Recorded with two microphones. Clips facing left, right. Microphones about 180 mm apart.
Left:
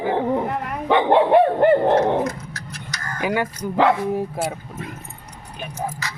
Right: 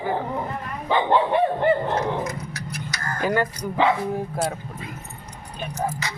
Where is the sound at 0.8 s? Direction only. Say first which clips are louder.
Left 4 dB; 70° left (ahead or behind).